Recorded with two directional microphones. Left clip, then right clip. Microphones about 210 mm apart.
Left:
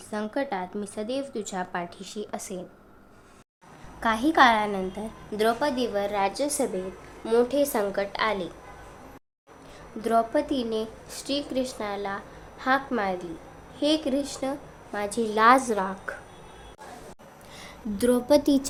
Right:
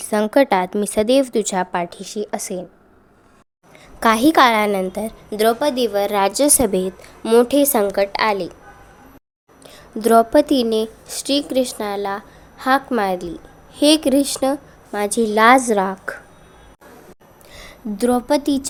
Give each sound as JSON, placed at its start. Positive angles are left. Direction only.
{"t": 0.0, "sound": "a woman's voice", "side_deg": -45}
{"t": 4.0, "sound": "a woman's voice", "side_deg": -45}
{"t": 10.0, "sound": "a woman's voice", "side_deg": -45}
{"t": 15.3, "sound": "a woman's voice", "side_deg": -25}
{"t": 17.5, "sound": "a woman's voice", "side_deg": -35}